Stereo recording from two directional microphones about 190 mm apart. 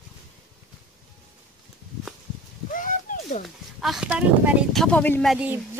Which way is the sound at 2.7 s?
45° left (ahead or behind).